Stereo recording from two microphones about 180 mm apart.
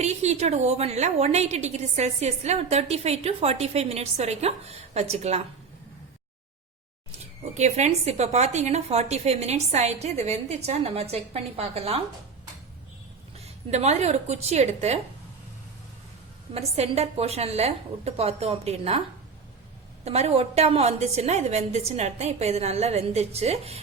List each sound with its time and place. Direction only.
0.0 s a woman's voice: 40° right (ahead or behind)
7.5 s a woman's voice: 40° right (ahead or behind)
13.3 s a woman's voice: 35° right (ahead or behind)
16.6 s a woman's voice: 35° right (ahead or behind)
20.1 s a woman's voice: 35° right (ahead or behind)